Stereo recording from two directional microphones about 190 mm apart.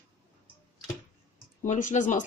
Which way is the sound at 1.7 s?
40° left (ahead or behind).